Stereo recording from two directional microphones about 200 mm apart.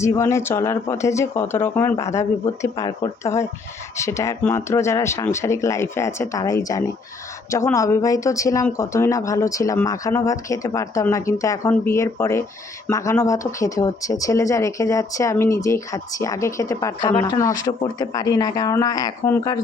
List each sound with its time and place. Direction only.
0.0 s speech: 15° left (ahead or behind)